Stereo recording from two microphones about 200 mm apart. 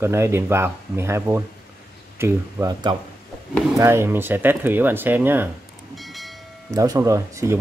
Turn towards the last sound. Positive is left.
turn(degrees=-15)  # may be behind; listen again after turning